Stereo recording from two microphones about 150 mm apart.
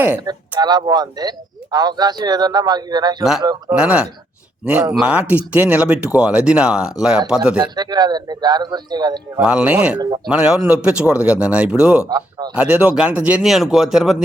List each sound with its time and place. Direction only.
0.2 s speech: 25° right (ahead or behind)
3.8 s speech: 10° right (ahead or behind)
7.8 s speech: 25° right (ahead or behind)
9.4 s speech: 5° right (ahead or behind)
12.0 s speech: 25° right (ahead or behind)
12.5 s speech: 10° right (ahead or behind)